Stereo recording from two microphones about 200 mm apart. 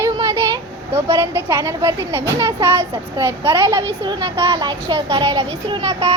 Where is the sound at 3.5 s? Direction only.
25° right (ahead or behind).